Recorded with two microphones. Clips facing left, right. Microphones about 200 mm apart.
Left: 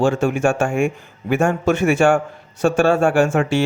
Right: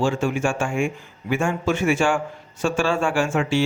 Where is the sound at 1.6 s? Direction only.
65° left (ahead or behind).